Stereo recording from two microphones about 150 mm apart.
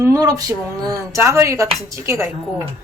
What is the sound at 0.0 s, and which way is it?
Speech, 20° right (ahead or behind).